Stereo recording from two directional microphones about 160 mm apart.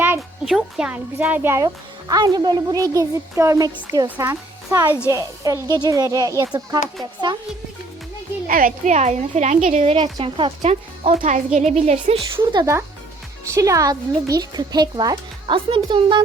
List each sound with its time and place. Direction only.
0.2 s speech: centre (ahead or behind); by 7.3 s 25° right (ahead or behind)
8.4 s a woman's voice: 60° right (ahead or behind); by 10.5 s 30° right (ahead or behind)
10.6 s a woman's voice: 40° right (ahead or behind)
13.5 s speech: 20° right (ahead or behind)